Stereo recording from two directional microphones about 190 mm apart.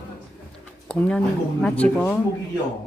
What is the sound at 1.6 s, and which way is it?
Speech, 5° left (ahead or behind).